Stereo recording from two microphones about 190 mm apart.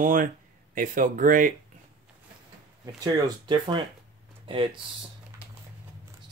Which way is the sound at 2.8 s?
20° right (ahead or behind).